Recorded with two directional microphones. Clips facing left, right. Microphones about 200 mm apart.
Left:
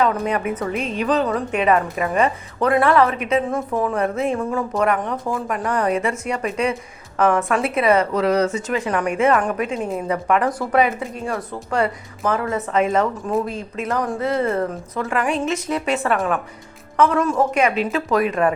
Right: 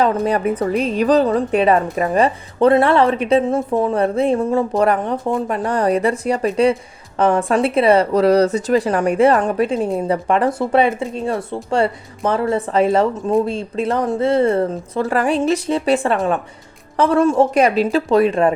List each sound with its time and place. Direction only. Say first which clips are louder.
0.0 s a woman's voice: right 3 dB; 35° right (ahead or behind)